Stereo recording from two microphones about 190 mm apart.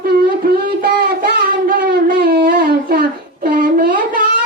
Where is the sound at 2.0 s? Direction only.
50° right (ahead or behind).